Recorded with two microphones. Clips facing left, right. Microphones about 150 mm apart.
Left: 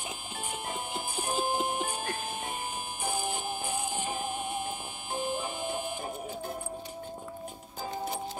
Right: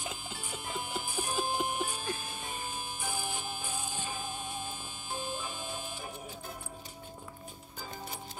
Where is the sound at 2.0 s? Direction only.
65° left (ahead or behind).